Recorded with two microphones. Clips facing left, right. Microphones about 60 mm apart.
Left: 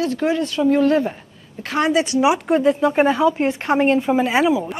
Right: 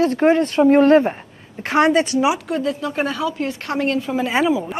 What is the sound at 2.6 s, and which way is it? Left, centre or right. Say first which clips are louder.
Speech: left 9 dB; left.